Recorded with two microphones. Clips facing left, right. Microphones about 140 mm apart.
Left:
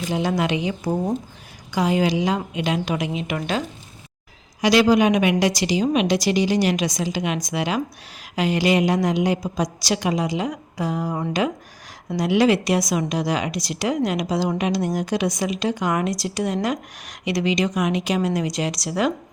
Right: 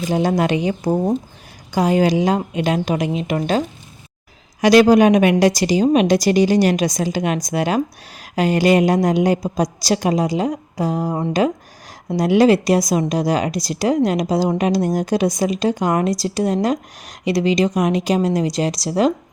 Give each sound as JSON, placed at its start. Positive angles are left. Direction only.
{"t": 0.1, "sound": "a woman's voice", "side_deg": -40}
{"t": 4.6, "sound": "a woman's voice", "side_deg": -45}